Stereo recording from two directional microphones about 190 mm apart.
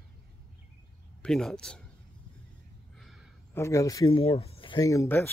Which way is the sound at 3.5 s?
15° left (ahead or behind).